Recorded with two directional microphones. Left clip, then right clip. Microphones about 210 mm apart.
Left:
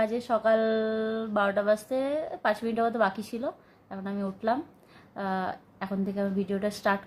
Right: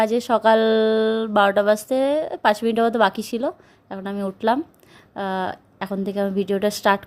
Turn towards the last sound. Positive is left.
turn(degrees=-45)  # may be behind; listen again after turning